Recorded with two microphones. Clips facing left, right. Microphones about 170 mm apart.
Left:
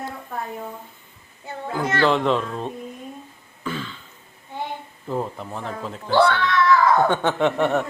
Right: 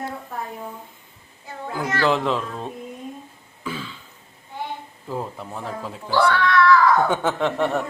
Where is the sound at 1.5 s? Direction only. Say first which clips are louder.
Left 2 dB; 25° left (ahead or behind).